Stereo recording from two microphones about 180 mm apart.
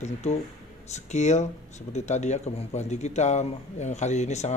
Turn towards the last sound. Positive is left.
turn(degrees=40)  # may be behind; listen again after turning